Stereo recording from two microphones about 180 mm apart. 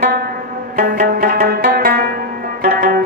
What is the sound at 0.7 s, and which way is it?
Music, 50° right (ahead or behind).